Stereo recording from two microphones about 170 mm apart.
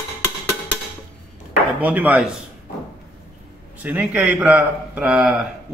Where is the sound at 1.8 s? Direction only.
10° right (ahead or behind).